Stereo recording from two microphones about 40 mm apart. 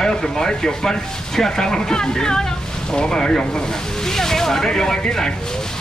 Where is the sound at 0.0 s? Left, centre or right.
Centre.